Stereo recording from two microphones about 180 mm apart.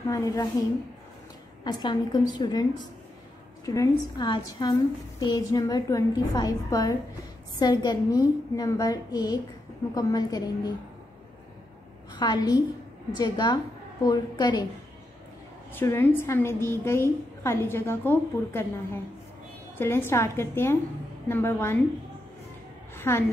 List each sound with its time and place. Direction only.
0.0 s a woman's voice: 15° left (ahead or behind)
1.6 s a woman's voice: 25° left (ahead or behind)
12.1 s a woman's voice: 25° left (ahead or behind)
15.7 s a woman's voice: 15° left (ahead or behind)
22.9 s a sound: 15° left (ahead or behind)